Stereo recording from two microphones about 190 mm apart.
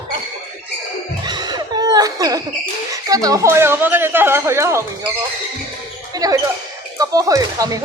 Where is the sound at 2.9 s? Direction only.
20° right (ahead or behind).